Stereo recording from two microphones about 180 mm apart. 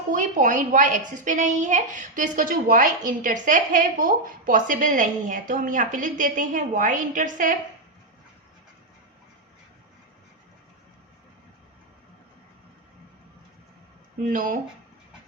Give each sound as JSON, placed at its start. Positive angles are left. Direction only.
{"t": 0.1, "sound": "a woman's voice", "side_deg": -45}
{"t": 14.3, "sound": "a woman's voice", "side_deg": -50}